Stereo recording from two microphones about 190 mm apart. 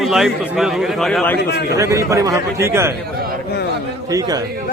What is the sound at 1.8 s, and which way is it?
Speech, 15° right (ahead or behind).